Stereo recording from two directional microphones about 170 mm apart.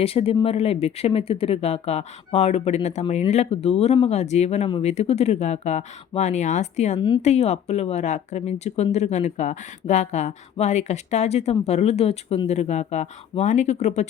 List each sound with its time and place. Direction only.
0.0 s speech: 35° left (ahead or behind)